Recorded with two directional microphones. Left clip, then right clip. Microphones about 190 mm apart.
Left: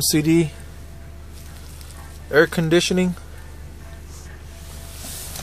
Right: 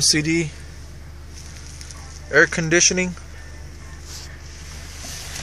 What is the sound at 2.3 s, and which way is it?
Speech, 20° left (ahead or behind).